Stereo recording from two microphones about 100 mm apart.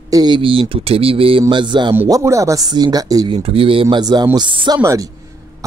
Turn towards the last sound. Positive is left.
turn(degrees=-35)  # may be behind; listen again after turning